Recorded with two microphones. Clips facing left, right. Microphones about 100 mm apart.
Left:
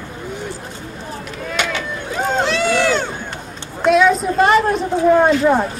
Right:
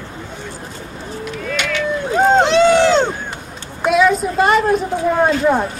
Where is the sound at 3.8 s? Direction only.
Centre (ahead or behind).